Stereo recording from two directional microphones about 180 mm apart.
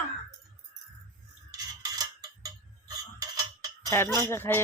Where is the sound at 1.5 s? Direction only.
20° right (ahead or behind).